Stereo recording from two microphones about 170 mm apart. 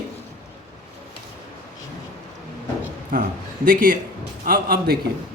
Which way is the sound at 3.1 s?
55° right (ahead or behind).